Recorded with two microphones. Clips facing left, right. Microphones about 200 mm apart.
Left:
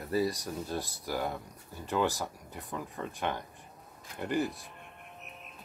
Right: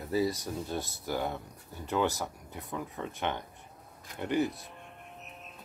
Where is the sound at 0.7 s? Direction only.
20° right (ahead or behind).